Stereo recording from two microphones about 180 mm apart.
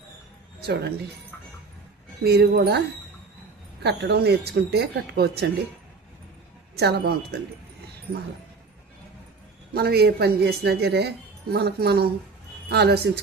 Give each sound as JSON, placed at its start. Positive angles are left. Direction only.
{"t": 0.6, "sound": "speech", "side_deg": -65}
{"t": 2.2, "sound": "speech", "side_deg": -60}
{"t": 3.8, "sound": "speech", "side_deg": -65}
{"t": 6.7, "sound": "speech", "side_deg": -65}
{"t": 9.7, "sound": "speech", "side_deg": -60}